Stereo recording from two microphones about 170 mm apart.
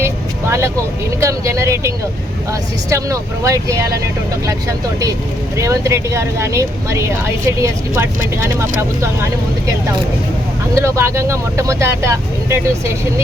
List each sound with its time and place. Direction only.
0.0 s vehicle: 15° right (ahead or behind)
1.2 s speech: 15° right (ahead or behind)
5.5 s speech: 20° right (ahead or behind)
10.8 s speech: 15° right (ahead or behind)